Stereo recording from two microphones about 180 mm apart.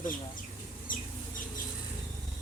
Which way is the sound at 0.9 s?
50° left (ahead or behind).